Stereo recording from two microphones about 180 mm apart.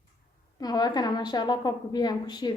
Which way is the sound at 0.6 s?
20° left (ahead or behind).